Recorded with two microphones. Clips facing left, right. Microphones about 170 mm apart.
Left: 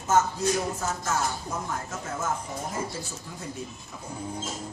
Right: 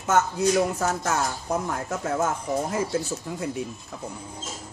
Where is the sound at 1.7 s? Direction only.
65° right (ahead or behind).